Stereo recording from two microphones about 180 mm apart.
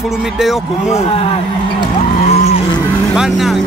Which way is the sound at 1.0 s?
30° left (ahead or behind).